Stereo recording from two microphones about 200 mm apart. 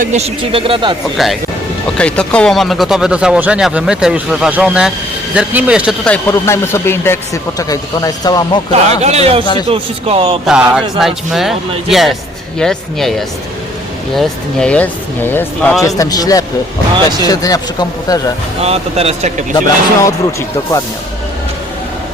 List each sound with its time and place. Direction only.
0.0 s speech: 35° right (ahead or behind)
1.1 s speech: centre (ahead or behind)
6.1 s a man's voice: 15° left (ahead or behind)
9.0 s speech: 30° right (ahead or behind)
10.4 s speech: 5° right (ahead or behind)
16.0 s a man's voice: 20° left (ahead or behind)
18.6 s speech: 30° right (ahead or behind)
19.5 s speech: 15° left (ahead or behind)